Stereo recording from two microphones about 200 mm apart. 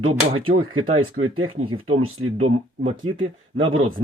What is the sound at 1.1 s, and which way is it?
Speech, 90° right.